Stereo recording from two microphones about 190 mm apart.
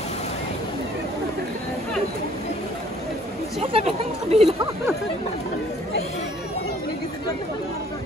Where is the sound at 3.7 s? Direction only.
30° right (ahead or behind).